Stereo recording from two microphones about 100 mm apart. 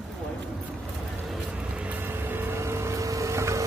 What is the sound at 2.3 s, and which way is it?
Vehicle, 25° right (ahead or behind).